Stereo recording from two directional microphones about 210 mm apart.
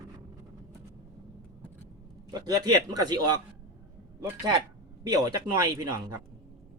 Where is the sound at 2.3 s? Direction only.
15° right (ahead or behind).